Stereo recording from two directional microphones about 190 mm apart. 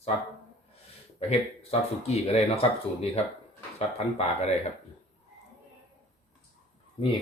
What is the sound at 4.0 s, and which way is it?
Speech, 35° left (ahead or behind).